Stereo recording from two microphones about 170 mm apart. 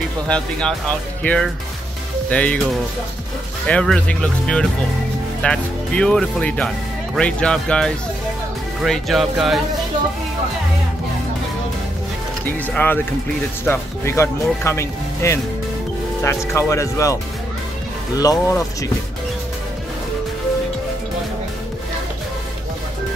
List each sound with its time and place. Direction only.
0.3 s speech: 5° left (ahead or behind)
12.4 s speech: 10° left (ahead or behind)